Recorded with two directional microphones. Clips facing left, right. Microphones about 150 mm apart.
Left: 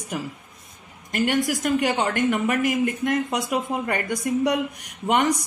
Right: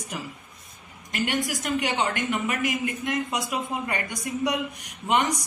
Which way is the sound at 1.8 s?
45° left (ahead or behind).